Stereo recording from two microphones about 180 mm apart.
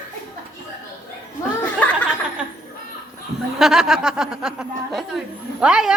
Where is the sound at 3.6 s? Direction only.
Centre (ahead or behind).